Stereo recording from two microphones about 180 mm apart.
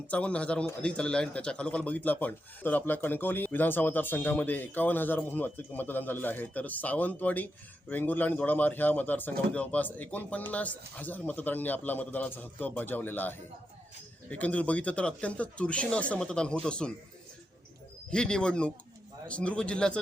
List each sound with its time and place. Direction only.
0.1 s a man's voice: 5° left (ahead or behind)
18.1 s a man's voice: 5° left (ahead or behind)